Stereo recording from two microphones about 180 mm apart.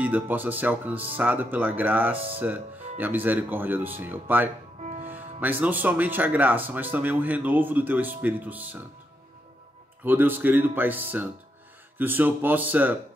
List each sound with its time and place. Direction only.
0.0 s speech: 10° right (ahead or behind)
2.1 s speech: 30° right (ahead or behind)
2.4 s speech: 10° right (ahead or behind)
10.0 s speech: 10° right (ahead or behind)